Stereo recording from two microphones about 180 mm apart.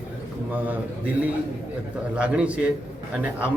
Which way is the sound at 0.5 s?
10° right (ahead or behind).